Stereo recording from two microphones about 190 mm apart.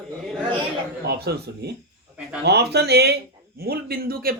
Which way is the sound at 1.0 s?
60° right (ahead or behind).